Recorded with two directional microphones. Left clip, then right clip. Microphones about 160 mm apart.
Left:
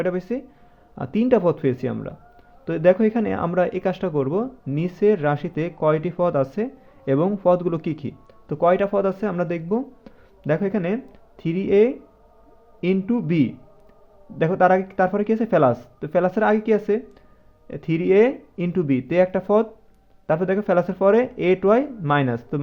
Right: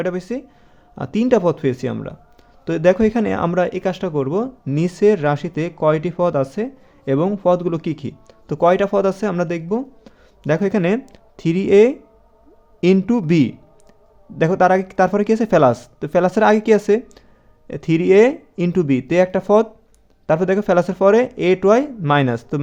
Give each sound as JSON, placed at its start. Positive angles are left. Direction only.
{"t": 0.0, "sound": "a man's voice", "side_deg": -15}